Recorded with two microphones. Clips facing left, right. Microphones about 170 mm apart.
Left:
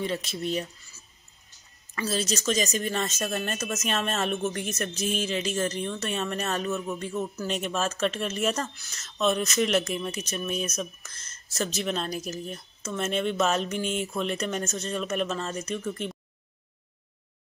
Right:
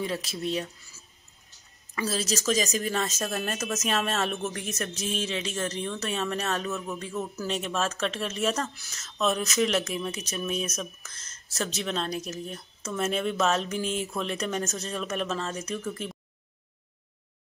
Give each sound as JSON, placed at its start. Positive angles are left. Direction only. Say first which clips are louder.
{"t": 0.0, "sound": "speech", "louder": "left 1 dB", "side_deg": 0}
{"t": 2.0, "sound": "speech", "louder": "even", "side_deg": 0}